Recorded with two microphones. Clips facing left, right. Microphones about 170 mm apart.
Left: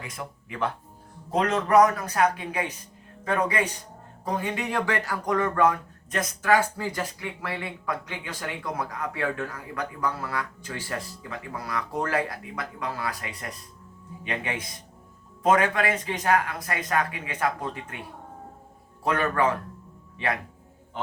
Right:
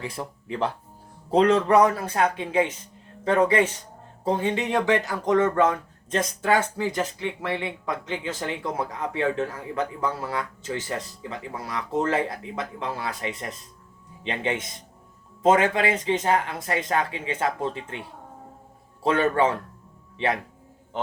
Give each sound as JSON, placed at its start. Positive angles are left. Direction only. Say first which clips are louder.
{"t": 0.0, "sound": "speech", "louder": "right 5 dB", "side_deg": -30}
{"t": 19.0, "sound": "speech", "louder": "right 3 dB", "side_deg": -25}